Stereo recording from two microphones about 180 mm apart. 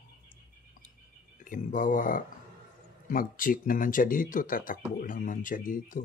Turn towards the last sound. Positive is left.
turn(degrees=50)  # may be behind; listen again after turning